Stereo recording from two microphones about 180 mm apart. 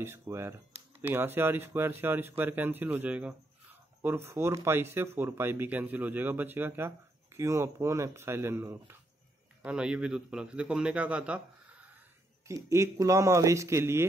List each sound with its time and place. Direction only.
0.0 s a man's voice: 15° right (ahead or behind)
12.4 s a man's voice: 15° right (ahead or behind)